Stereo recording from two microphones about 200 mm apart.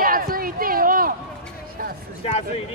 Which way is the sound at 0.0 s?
45° right (ahead or behind).